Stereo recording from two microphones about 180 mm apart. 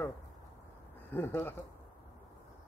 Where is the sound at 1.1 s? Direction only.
10° left (ahead or behind).